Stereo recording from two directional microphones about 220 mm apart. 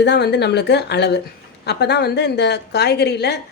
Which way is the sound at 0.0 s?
50° left (ahead or behind).